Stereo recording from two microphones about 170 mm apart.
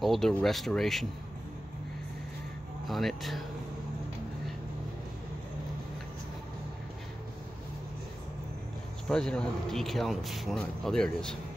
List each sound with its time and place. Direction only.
0.0 s a man's voice: centre (ahead or behind)
2.9 s a man's voice: centre (ahead or behind)
9.1 s a man's voice: 5° left (ahead or behind)